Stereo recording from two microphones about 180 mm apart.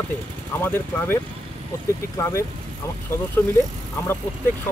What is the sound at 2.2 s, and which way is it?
Speech, 15° left (ahead or behind).